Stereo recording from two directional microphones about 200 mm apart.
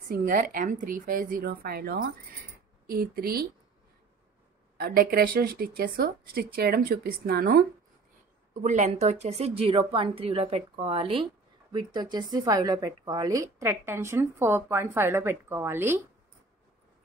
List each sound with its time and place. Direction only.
0.1 s speech: 45° right (ahead or behind)
4.7 s speech: 50° right (ahead or behind)
8.6 s a woman's voice: 35° right (ahead or behind); by 16.0 s 10° right (ahead or behind)